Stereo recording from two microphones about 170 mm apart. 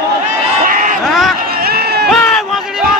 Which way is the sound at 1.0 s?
Centre (ahead or behind).